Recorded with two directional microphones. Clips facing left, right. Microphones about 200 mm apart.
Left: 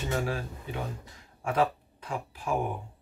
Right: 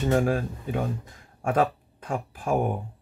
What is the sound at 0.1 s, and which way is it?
Speech, 50° right (ahead or behind).